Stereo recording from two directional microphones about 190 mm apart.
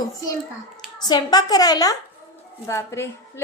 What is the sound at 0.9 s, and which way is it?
A woman's voice, 20° left (ahead or behind).